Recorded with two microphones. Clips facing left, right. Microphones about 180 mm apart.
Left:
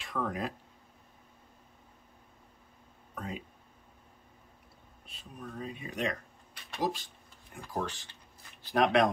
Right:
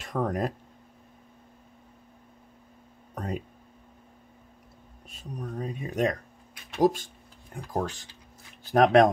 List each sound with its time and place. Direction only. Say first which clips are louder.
0.0 s speech: right 6 dB; 45° right (ahead or behind)
3.2 s speech: right 6 dB; 45° right (ahead or behind)
5.0 s speech: right 7 dB; 40° right (ahead or behind)